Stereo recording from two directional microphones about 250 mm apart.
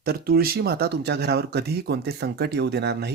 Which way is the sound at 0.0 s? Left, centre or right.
Right.